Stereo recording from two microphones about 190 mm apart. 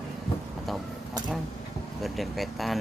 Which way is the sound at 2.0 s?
Centre (ahead or behind).